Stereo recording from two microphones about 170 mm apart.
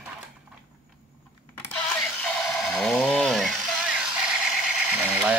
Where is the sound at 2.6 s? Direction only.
Centre (ahead or behind).